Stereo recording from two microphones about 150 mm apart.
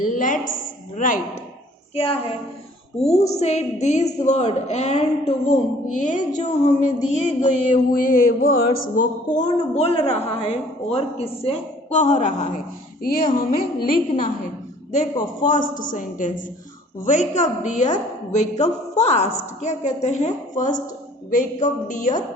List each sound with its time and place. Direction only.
0.0 s a woman's voice: 60° left (ahead or behind)
2.0 s a woman's voice: 40° left (ahead or behind); by 8.5 s 80° left
9.0 s a woman's voice: 55° left (ahead or behind)
13.8 s a woman's voice: 65° left (ahead or behind)
15.4 s a woman's voice: 60° left (ahead or behind)